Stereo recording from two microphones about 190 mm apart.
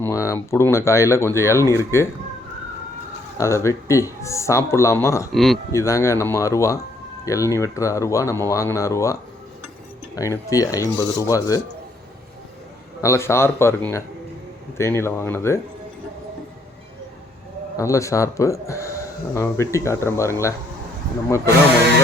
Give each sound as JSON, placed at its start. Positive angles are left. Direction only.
{"t": 0.0, "sound": "speech", "side_deg": 15}
{"t": 3.3, "sound": "speech", "side_deg": 15}
{"t": 5.3, "sound": "speech", "side_deg": 0}
{"t": 5.7, "sound": "speech", "side_deg": 15}
{"t": 10.2, "sound": "speech", "side_deg": 15}
{"t": 13.0, "sound": "speech", "side_deg": 15}
{"t": 17.7, "sound": "speech", "side_deg": 15}